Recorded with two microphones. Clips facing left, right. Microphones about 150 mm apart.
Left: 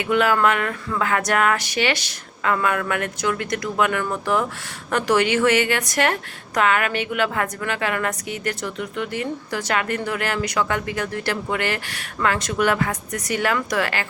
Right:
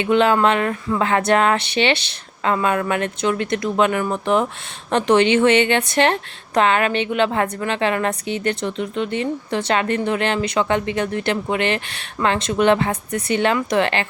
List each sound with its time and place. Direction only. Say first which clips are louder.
0.0 s a woman's voice: right 3 dB; 25° right (ahead or behind)